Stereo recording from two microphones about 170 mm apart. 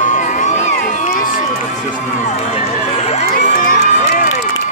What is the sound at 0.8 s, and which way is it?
Run, 50° left (ahead or behind).